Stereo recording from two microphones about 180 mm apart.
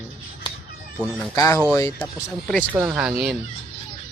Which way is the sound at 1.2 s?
15° left (ahead or behind).